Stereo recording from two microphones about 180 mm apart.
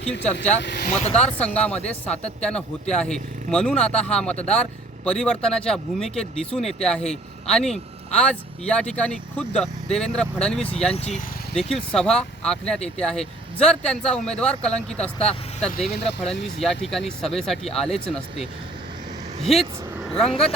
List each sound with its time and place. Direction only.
0.0 s speech: 10° left (ahead or behind)
0.6 s speech: 70° left (ahead or behind)
0.9 s speech: 40° left (ahead or behind)
1.5 s speech: 5° left (ahead or behind)
10.8 s speech: 35° left (ahead or behind)
11.5 s speech: centre (ahead or behind)
15.9 s speech: 70° left (ahead or behind)
16.4 s speech: centre (ahead or behind)
19.4 s speech: centre (ahead or behind)